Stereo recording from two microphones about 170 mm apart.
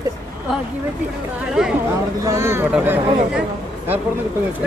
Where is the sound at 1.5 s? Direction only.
5° right (ahead or behind).